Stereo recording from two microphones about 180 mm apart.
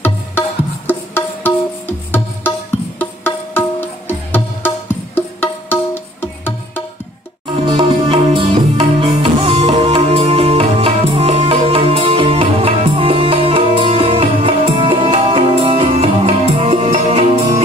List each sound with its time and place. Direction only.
0.8 s music: 10° left (ahead or behind)
3.0 s music: 10° left (ahead or behind)
7.6 s music: 25° right (ahead or behind)